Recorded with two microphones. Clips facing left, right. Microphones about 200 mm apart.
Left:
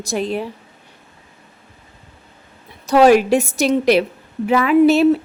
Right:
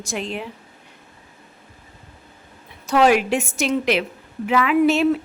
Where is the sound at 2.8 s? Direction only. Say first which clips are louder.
Left 5 dB; 35° left (ahead or behind).